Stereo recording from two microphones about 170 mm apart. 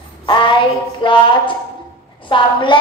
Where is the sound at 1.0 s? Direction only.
30° left (ahead or behind).